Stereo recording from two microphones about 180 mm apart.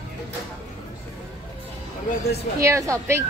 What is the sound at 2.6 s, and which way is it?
Speech, 15° right (ahead or behind).